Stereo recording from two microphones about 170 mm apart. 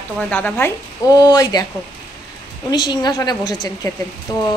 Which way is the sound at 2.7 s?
25° left (ahead or behind).